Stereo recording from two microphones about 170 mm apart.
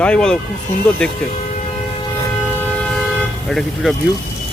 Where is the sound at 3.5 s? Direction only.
Centre (ahead or behind).